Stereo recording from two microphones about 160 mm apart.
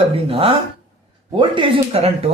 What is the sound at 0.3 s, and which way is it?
Speech, 35° right (ahead or behind).